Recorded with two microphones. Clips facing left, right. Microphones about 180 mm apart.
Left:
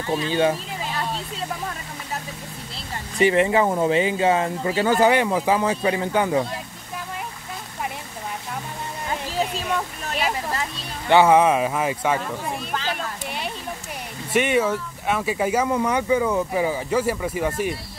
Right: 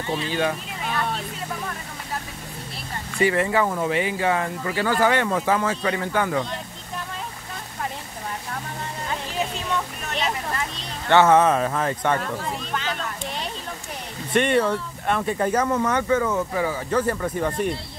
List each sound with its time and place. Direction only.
0.3 s a sound: 25° left (ahead or behind)
3.2 s speech: 20° left (ahead or behind)
11.1 s speech: 10° left (ahead or behind)
14.3 s speech: 5° left (ahead or behind)